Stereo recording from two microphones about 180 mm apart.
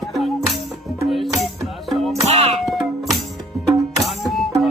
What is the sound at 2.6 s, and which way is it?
Music, centre (ahead or behind).